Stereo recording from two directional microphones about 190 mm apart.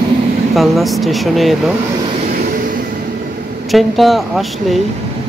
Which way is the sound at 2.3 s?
50° right (ahead or behind).